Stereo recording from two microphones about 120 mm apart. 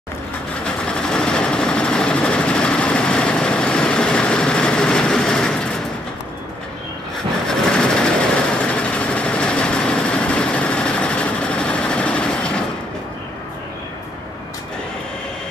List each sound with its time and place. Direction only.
0.8 s vehicle: 5° left (ahead or behind)
7.4 s vehicle: 5° left (ahead or behind)